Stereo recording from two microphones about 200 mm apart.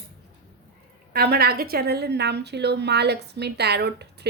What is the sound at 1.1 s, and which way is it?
A woman's voice, 50° right (ahead or behind).